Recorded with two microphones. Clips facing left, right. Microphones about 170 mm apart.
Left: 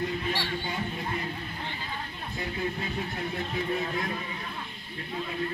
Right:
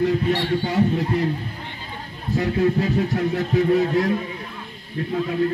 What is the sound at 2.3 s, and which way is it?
Speech, 75° right (ahead or behind).